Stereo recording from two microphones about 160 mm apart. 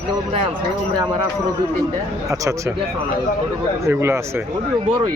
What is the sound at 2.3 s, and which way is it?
Speech, 20° right (ahead or behind).